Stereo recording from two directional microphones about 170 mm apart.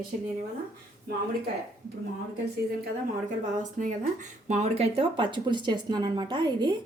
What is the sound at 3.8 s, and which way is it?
Speech, 45° right (ahead or behind).